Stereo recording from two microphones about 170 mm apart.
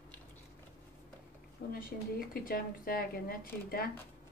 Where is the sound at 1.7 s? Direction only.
60° left (ahead or behind).